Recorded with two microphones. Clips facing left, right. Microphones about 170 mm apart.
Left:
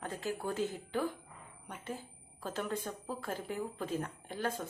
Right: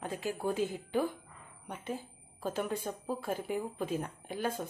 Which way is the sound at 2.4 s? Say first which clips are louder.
Right 3 dB; 15° right (ahead or behind).